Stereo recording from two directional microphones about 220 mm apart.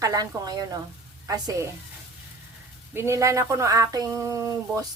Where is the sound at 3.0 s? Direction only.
15° right (ahead or behind).